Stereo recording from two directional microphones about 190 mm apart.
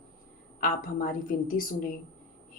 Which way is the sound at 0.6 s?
45° left (ahead or behind).